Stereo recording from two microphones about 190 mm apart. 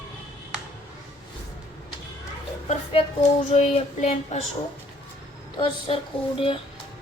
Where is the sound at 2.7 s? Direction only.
35° left (ahead or behind).